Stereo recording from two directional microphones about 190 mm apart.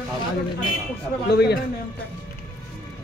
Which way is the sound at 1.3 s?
60° left (ahead or behind).